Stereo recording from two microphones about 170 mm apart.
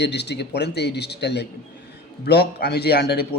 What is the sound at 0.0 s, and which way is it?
A man's voice, 90° left.